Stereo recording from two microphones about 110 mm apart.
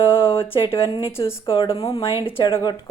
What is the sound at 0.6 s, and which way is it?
A woman's voice, 50° left (ahead or behind).